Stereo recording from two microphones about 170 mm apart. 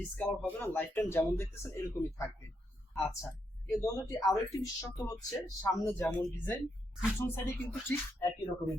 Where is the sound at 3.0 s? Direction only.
20° left (ahead or behind).